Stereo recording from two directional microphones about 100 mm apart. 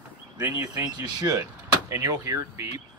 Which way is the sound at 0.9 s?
40° right (ahead or behind).